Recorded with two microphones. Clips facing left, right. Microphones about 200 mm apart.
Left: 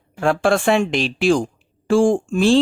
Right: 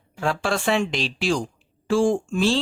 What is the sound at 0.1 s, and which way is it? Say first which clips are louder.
Speech: left 7 dB; 55° left (ahead or behind).